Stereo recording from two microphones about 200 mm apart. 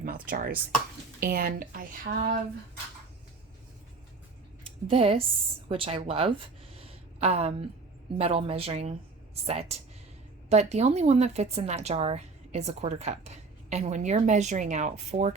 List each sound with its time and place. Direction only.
0.0 s speech: 45° right (ahead or behind)
4.9 s speech: 30° right (ahead or behind)
6.7 s a sound: 30° right (ahead or behind)
8.2 s speech: 30° right (ahead or behind)